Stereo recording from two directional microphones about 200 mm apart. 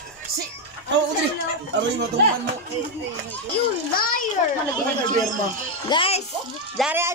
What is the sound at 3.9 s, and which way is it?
Speech, 45° left (ahead or behind).